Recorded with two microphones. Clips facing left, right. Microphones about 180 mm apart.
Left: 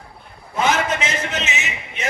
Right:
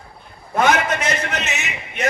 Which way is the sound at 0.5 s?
60° right (ahead or behind).